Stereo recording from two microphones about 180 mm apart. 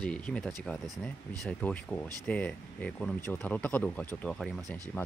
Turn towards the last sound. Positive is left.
turn(degrees=5)  # may be behind; listen again after turning